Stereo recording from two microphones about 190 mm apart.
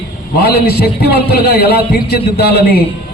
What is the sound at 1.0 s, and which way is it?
A man's voice, 55° left (ahead or behind).